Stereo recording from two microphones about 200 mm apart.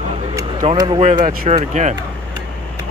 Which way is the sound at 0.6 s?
25° right (ahead or behind).